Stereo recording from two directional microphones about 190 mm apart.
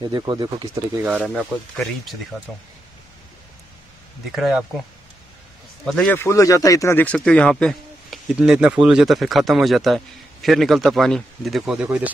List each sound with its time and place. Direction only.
0.0 s speech: 20° right (ahead or behind)
1.0 s speech: 5° right (ahead or behind)
4.3 s speech: centre (ahead or behind)
5.9 s speech: 5° left (ahead or behind)